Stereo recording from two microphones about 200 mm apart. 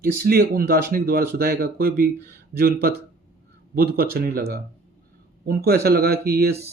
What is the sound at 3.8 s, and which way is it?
Speech, 50° right (ahead or behind).